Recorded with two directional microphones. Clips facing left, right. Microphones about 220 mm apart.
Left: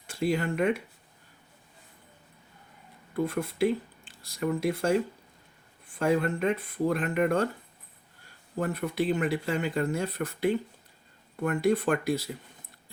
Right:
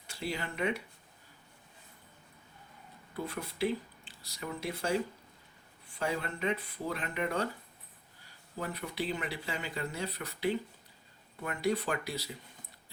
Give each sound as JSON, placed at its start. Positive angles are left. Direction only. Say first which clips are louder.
{"t": 0.1, "sound": "speech", "louder": "left 10 dB", "side_deg": 50}
{"t": 3.2, "sound": "speech", "louder": "left 8 dB", "side_deg": 50}
{"t": 8.5, "sound": "speech", "louder": "left 8 dB", "side_deg": 50}